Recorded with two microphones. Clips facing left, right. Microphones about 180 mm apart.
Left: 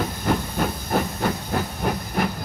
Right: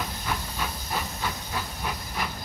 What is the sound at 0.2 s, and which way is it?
Hiss, 50° left (ahead or behind).